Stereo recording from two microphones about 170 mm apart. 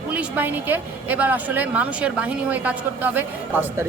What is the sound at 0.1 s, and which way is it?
A woman's voice, 10° right (ahead or behind).